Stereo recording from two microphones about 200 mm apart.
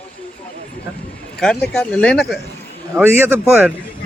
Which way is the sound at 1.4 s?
5° left (ahead or behind).